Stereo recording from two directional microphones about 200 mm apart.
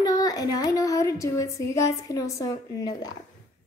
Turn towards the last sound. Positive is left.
turn(degrees=20)  # may be behind; listen again after turning